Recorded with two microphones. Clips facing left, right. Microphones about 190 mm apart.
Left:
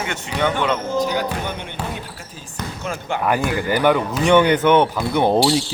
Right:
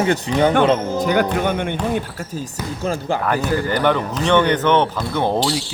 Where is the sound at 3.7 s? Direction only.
10° left (ahead or behind).